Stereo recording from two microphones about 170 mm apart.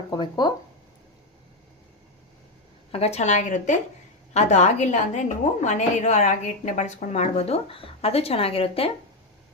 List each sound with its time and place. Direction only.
0.1 s speech: 25° left (ahead or behind)
2.9 s a woman's voice: 40° left (ahead or behind)